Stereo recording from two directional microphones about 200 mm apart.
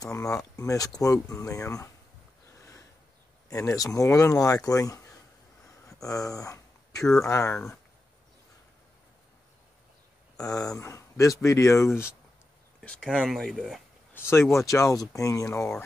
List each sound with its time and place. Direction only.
0.0 s speech: 15° left (ahead or behind)
3.4 s speech: 15° left (ahead or behind)
5.9 s a sound: 15° left (ahead or behind)
7.2 s speech: 15° left (ahead or behind)
10.4 s speech: 15° left (ahead or behind); by 13.8 s centre (ahead or behind)
14.1 s speech: 10° left (ahead or behind)